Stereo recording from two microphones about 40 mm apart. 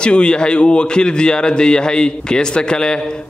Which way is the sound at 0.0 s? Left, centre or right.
Left.